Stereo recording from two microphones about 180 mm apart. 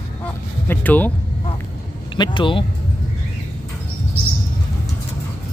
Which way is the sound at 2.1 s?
25° left (ahead or behind).